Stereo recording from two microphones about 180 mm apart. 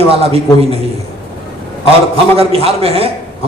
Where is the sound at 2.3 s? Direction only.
35° right (ahead or behind).